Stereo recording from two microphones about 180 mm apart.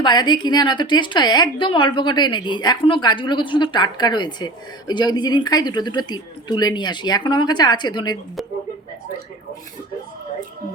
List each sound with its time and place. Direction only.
0.0 s a woman's voice: 25° left (ahead or behind)